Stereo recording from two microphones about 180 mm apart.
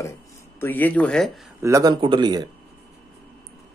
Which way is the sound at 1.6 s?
20° right (ahead or behind).